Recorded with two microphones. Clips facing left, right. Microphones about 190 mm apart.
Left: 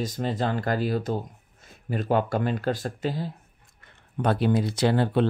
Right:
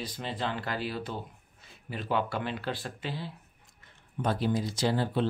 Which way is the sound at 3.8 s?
60° left (ahead or behind).